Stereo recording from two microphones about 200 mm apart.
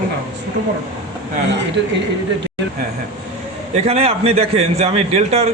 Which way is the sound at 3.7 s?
30° right (ahead or behind).